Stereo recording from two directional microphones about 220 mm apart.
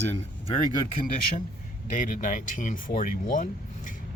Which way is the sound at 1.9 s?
35° left (ahead or behind).